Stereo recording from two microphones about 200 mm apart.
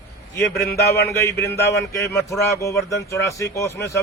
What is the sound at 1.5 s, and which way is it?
A man's voice, 15° left (ahead or behind).